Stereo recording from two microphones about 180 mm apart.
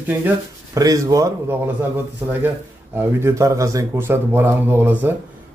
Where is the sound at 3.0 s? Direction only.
15° right (ahead or behind).